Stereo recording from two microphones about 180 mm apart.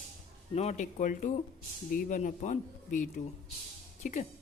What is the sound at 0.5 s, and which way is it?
Speech, 40° left (ahead or behind).